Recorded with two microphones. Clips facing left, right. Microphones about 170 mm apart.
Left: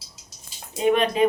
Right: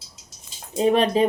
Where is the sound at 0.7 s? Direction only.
35° right (ahead or behind).